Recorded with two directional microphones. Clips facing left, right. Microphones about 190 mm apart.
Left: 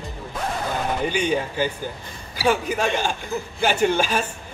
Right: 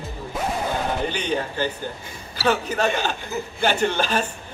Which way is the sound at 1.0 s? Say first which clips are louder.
Left 2 dB; 10° left (ahead or behind).